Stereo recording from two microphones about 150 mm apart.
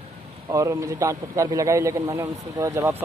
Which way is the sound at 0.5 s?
20° right (ahead or behind).